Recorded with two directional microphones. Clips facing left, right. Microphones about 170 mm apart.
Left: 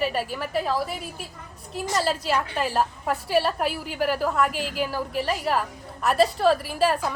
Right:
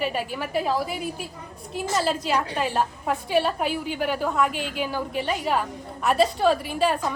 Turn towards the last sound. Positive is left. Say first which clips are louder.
# even
turn(degrees=0)  # may be behind; listen again after turning